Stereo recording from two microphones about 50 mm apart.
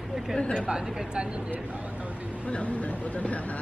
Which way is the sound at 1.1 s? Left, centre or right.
Centre.